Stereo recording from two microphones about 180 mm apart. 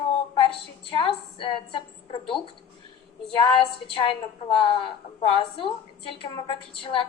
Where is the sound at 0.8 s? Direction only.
30° left (ahead or behind).